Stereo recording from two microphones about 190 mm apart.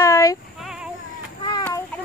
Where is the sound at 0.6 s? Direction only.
5° right (ahead or behind).